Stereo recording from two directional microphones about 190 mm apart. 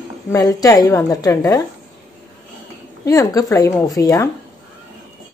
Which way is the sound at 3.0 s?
20° left (ahead or behind).